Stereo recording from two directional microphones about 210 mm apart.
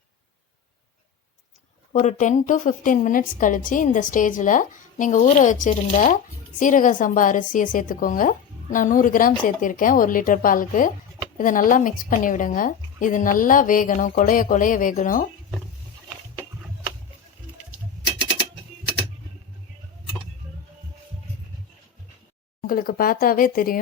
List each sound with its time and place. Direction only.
1.9 s a woman's voice: 35° left (ahead or behind)
22.6 s speech: 45° left (ahead or behind)